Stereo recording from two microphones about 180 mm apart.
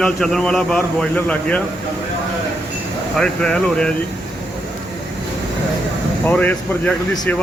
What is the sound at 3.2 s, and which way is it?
Speech, 5° left (ahead or behind).